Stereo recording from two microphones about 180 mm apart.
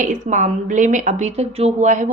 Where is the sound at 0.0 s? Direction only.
45° right (ahead or behind).